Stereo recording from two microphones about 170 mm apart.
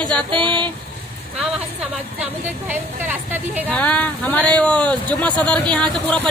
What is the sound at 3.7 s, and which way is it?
Speech, 10° left (ahead or behind).